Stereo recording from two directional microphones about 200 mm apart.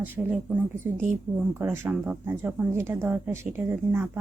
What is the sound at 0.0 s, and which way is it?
A woman's voice, 10° right (ahead or behind).